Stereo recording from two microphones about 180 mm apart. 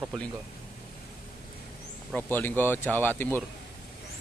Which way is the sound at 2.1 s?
10° left (ahead or behind).